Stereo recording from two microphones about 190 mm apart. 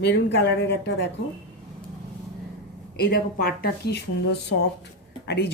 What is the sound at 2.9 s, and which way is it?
Speech, 55° left (ahead or behind).